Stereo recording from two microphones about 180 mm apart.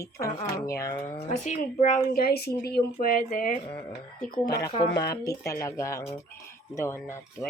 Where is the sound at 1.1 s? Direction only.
40° left (ahead or behind).